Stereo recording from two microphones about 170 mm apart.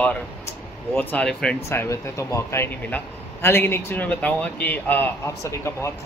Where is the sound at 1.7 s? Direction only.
15° left (ahead or behind).